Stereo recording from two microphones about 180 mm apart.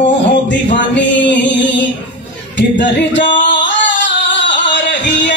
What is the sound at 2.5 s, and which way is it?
Singing, 80° left.